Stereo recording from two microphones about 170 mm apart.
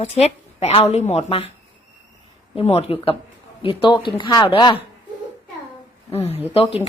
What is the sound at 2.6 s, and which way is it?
Speech, 35° left (ahead or behind).